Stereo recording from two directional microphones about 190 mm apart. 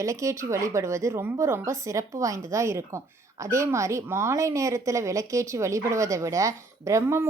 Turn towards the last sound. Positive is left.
turn(degrees=-15)  # may be behind; listen again after turning